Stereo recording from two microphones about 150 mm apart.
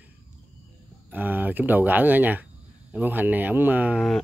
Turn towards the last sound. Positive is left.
turn(degrees=-10)  # may be behind; listen again after turning